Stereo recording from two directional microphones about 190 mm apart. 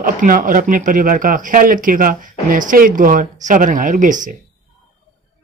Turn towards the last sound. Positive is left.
turn(degrees=-40)  # may be behind; listen again after turning